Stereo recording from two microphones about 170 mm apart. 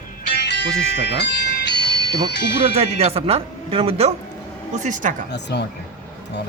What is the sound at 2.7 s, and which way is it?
Speech, 40° right (ahead or behind).